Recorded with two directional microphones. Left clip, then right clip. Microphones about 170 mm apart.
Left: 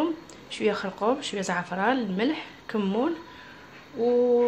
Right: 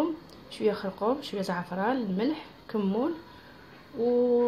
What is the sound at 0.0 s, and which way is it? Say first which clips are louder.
Speech: left 2 dB; 5° right (ahead or behind).